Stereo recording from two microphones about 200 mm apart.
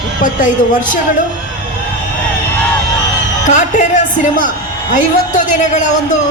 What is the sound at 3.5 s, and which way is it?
A woman's voice, 40° left (ahead or behind).